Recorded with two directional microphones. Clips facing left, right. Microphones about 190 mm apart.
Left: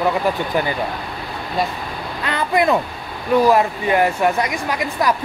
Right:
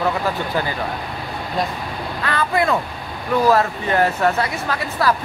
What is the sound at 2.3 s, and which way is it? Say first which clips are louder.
Speech: left 2 dB; 20° left (ahead or behind).